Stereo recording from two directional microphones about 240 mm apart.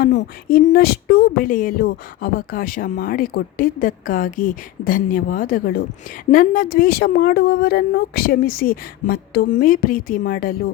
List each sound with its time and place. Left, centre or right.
0.2 s speech: left